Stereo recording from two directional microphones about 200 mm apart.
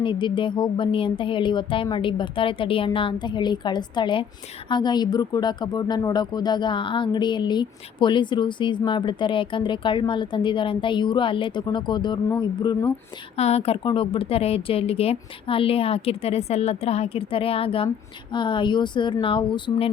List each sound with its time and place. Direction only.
0.0 s speech: 25° left (ahead or behind)
13.3 s speech: 30° left (ahead or behind)